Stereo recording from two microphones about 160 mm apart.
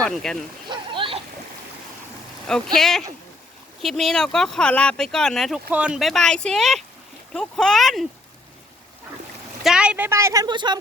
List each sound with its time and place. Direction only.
0.0 s speech: 5° left (ahead or behind)
0.7 s a sound: 30° right (ahead or behind)
2.5 s speech: 5° left (ahead or behind)
5.6 s speech: 10° right (ahead or behind)
9.6 s a woman's voice: 5° right (ahead or behind); by 10.8 s 30° right (ahead or behind)